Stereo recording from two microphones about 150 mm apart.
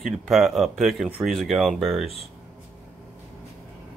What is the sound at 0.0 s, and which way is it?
Speech, centre (ahead or behind).